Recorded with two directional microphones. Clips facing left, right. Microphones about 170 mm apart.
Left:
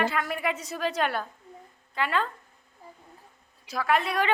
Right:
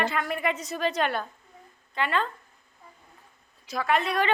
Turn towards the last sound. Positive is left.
turn(degrees=5)  # may be behind; listen again after turning